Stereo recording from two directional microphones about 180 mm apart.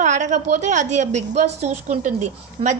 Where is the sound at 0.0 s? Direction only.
40° right (ahead or behind).